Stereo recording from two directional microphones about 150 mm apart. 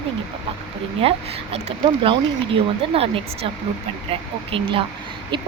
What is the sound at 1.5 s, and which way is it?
A woman's voice, 40° right (ahead or behind).